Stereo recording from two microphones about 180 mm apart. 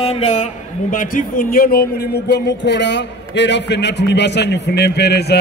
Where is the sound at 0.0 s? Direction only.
35° left (ahead or behind).